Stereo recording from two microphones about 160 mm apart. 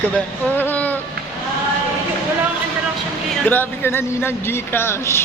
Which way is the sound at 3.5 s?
15° left (ahead or behind).